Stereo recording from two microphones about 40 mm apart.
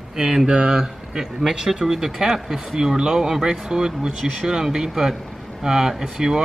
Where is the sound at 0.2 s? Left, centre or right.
Centre.